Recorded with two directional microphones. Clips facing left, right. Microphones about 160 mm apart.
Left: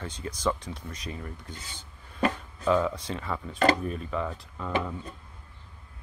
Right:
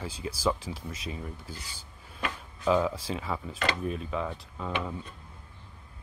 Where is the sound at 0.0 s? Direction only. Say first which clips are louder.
Even; 5° right (ahead or behind).